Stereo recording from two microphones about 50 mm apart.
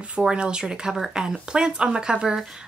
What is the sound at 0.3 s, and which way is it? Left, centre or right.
A woman's voice, centre.